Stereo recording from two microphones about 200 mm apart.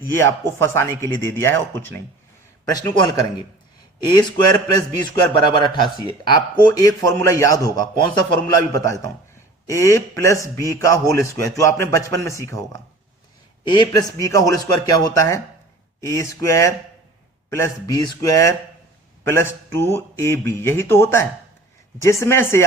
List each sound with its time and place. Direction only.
0.0 s speech: 15° left (ahead or behind)
2.6 s a man's voice: 20° left (ahead or behind)
13.7 s speech: 15° left (ahead or behind)